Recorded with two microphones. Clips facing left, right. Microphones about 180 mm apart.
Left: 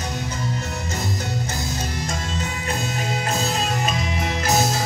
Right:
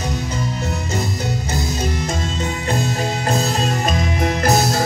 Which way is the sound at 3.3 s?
40° right (ahead or behind).